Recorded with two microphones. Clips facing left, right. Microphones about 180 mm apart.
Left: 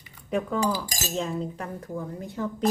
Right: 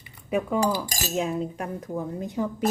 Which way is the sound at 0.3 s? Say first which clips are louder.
Right 2 dB; 10° right (ahead or behind).